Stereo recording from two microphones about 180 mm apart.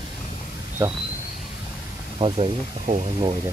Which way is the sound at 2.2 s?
35° right (ahead or behind).